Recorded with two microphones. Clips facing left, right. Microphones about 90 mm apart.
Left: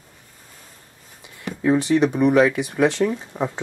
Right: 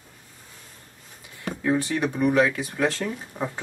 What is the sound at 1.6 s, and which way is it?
Speech, 20° left (ahead or behind).